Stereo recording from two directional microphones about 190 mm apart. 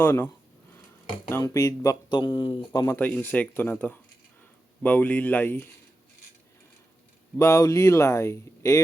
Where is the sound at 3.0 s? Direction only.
10° left (ahead or behind).